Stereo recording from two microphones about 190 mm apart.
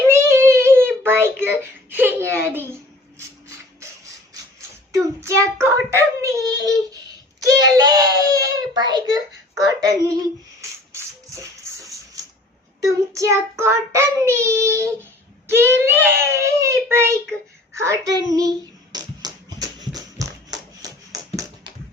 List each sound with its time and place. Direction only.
0.1 s a sound: 15° right (ahead or behind)
4.9 s child singing: 15° right (ahead or behind)
10.6 s shuffle: 15° right (ahead or behind)
12.8 s child singing: 15° right (ahead or behind)
17.7 s hands: 15° right (ahead or behind)